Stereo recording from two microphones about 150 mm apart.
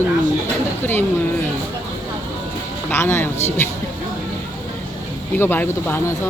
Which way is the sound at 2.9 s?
15° left (ahead or behind).